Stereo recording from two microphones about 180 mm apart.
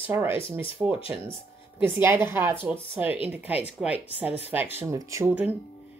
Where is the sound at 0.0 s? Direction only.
10° right (ahead or behind).